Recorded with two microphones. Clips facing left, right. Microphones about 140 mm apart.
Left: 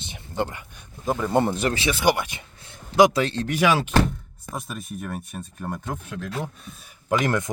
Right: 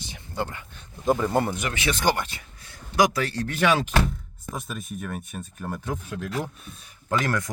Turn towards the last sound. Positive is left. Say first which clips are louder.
# left 3 dB
turn(degrees=20)  # may be behind; listen again after turning